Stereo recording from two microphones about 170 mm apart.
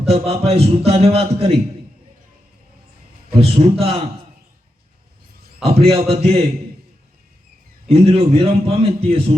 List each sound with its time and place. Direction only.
0.0 s a man's voice: 35° right (ahead or behind)
3.3 s a man's voice: 35° right (ahead or behind)
5.6 s a man's voice: 35° right (ahead or behind)
7.9 s a man's voice: 35° right (ahead or behind)